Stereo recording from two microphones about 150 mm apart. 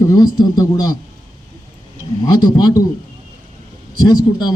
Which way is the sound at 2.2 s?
30° left (ahead or behind).